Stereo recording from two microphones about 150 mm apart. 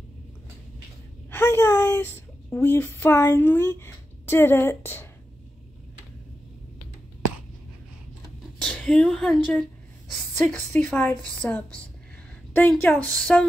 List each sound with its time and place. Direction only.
1.3 s a sound: 15° left (ahead or behind)
2.5 s speech: 15° left (ahead or behind)
8.5 s speech: 5° left (ahead or behind)